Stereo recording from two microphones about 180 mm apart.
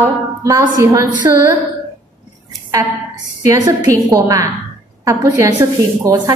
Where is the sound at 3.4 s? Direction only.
20° right (ahead or behind).